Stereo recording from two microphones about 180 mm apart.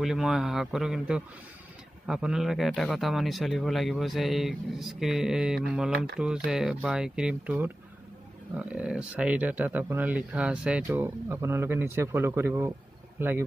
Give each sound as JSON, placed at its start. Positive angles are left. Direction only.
{"t": 0.0, "sound": "speech", "side_deg": 0}